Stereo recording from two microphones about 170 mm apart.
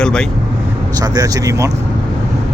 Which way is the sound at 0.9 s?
20° right (ahead or behind).